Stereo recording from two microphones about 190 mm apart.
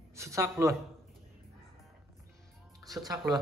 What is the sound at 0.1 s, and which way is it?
Speech, 15° right (ahead or behind).